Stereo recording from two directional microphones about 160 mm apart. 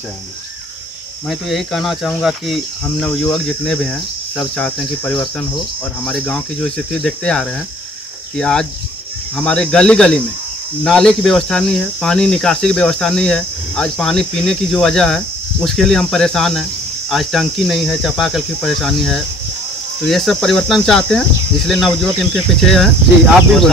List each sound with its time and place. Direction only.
1.2 s cricket: centre (ahead or behind)